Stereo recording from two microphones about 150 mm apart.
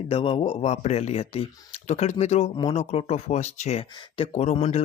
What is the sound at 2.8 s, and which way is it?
Speech, 45° left (ahead or behind).